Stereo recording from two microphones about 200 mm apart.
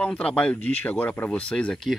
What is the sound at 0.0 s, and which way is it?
Speech, 5° left (ahead or behind).